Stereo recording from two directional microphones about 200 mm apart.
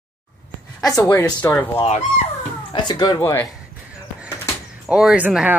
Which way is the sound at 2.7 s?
20° left (ahead or behind).